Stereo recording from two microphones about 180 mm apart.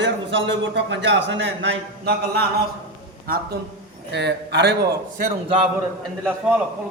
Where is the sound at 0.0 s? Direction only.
90° right; by 3.6 s 55° right (ahead or behind).